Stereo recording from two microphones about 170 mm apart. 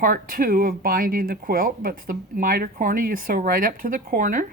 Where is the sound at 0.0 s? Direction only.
55° right (ahead or behind).